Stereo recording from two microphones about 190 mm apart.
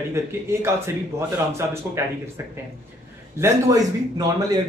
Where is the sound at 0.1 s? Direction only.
15° right (ahead or behind).